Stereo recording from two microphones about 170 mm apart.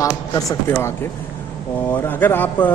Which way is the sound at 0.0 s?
20° left (ahead or behind).